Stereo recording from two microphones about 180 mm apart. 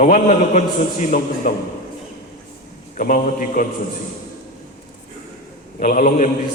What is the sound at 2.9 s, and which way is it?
Speech, 45° left (ahead or behind).